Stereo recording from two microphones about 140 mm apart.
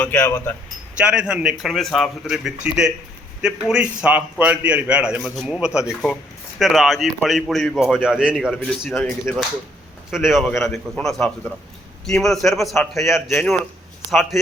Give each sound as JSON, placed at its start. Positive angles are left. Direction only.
{"t": 0.0, "sound": "speech", "side_deg": 15}
{"t": 0.9, "sound": "a man's voice", "side_deg": -5}
{"t": 10.2, "sound": "a man's voice", "side_deg": 0}